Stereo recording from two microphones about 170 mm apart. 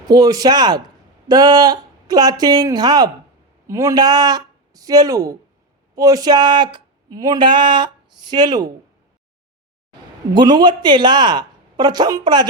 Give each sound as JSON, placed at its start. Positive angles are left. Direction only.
{"t": 0.1, "sound": "speech", "side_deg": -20}
{"t": 10.3, "sound": "speech", "side_deg": -25}